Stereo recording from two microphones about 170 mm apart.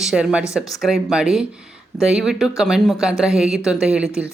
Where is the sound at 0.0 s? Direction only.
5° right (ahead or behind).